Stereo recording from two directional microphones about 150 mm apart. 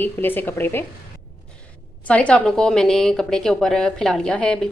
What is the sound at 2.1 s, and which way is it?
A woman's voice, 10° left (ahead or behind).